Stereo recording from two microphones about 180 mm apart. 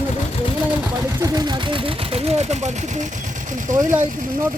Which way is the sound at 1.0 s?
15° right (ahead or behind).